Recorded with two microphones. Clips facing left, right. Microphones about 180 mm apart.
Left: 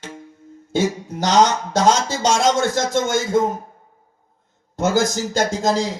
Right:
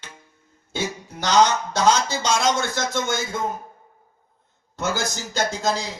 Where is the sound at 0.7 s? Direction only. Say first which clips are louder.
Left 8 dB; 45° left (ahead or behind).